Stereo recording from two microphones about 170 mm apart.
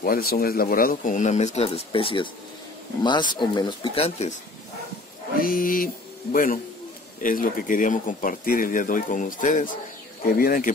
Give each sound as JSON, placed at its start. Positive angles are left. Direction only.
{"t": 0.0, "sound": "speech", "side_deg": 65}
{"t": 5.4, "sound": "speech", "side_deg": 55}